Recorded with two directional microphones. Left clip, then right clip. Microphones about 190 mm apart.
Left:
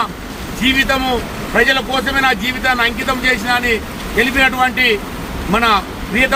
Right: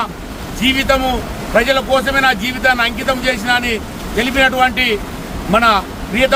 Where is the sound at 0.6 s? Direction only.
30° right (ahead or behind).